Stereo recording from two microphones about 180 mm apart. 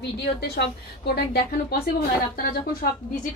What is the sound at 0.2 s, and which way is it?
A woman's voice, 65° left (ahead or behind).